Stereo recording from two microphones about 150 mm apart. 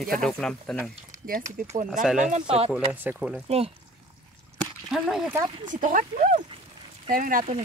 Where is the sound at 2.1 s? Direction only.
55° right (ahead or behind).